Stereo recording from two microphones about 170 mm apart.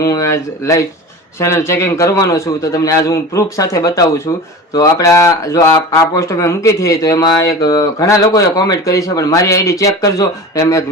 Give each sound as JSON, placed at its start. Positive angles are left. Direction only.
{"t": 0.0, "sound": "speech", "side_deg": 20}